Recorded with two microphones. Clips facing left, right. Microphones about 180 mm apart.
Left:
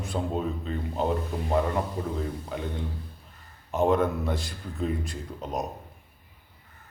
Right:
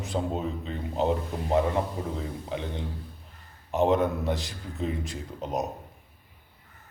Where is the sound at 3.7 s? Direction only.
20° right (ahead or behind).